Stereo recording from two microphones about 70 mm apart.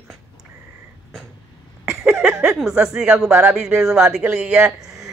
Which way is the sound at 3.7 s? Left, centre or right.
Centre.